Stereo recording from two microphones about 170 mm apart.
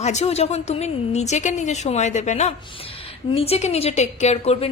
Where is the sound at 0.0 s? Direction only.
40° left (ahead or behind).